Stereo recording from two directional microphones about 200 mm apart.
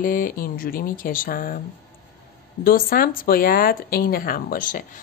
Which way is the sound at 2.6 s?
45° left (ahead or behind).